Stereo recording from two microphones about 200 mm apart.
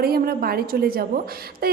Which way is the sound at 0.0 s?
50° right (ahead or behind).